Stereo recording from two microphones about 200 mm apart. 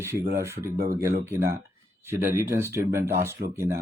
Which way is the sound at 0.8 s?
45° right (ahead or behind).